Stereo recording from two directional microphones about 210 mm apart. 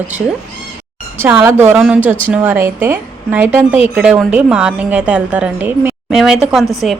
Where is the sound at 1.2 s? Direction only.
10° right (ahead or behind).